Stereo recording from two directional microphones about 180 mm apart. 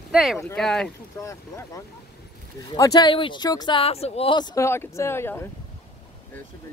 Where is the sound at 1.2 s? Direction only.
15° left (ahead or behind).